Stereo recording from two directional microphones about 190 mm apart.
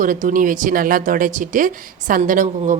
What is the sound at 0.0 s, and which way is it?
Speech, 45° right (ahead or behind).